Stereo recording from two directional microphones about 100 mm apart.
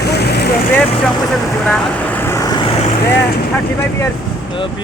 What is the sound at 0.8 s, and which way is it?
Vehicle, 10° left (ahead or behind).